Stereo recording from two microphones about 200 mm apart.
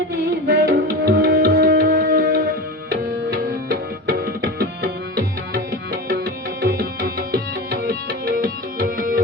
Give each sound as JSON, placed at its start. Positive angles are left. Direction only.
{"t": 0.4, "sound": "music", "side_deg": -50}
{"t": 2.9, "sound": "tabla", "side_deg": -55}
{"t": 6.6, "sound": "tabla", "side_deg": -50}
{"t": 8.8, "sound": "music", "side_deg": -45}